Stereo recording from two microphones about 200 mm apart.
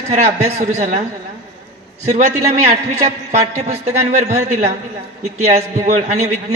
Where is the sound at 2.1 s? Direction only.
35° right (ahead or behind).